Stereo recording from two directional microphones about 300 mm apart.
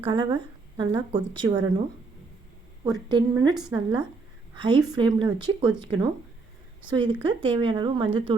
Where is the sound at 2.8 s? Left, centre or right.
Centre.